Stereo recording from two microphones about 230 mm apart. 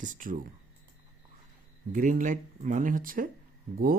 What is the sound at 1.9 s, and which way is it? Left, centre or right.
Speech, right.